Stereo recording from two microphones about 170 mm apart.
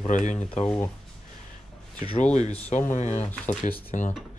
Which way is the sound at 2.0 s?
40° left (ahead or behind).